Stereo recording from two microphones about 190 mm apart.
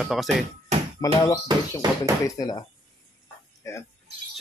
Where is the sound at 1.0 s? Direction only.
20° left (ahead or behind).